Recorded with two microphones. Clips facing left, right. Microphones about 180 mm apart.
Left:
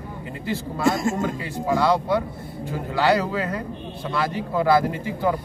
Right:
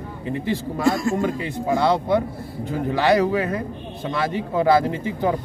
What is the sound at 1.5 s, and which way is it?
A man's voice, 20° right (ahead or behind).